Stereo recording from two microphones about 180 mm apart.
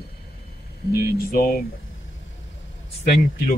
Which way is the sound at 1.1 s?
55° left (ahead or behind).